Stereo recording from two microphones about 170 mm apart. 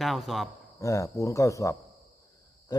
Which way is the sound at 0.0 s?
Centre (ahead or behind).